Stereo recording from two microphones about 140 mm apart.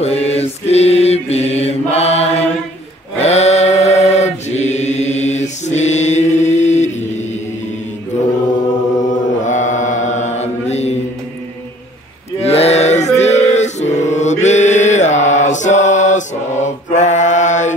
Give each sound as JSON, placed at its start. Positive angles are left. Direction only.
{"t": 0.0, "sound": "mantra", "side_deg": 50}
{"t": 9.1, "sound": "mantra", "side_deg": 60}
{"t": 12.4, "sound": "a sound", "side_deg": 45}
{"t": 13.2, "sound": "mantra", "side_deg": 55}